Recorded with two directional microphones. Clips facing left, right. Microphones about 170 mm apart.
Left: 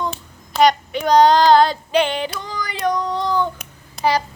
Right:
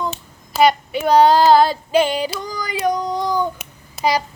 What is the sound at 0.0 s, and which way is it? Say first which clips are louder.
Child singing: even; 5° right (ahead or behind).